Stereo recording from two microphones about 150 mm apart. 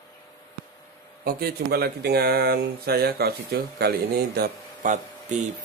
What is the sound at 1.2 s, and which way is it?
Speech, 90° right.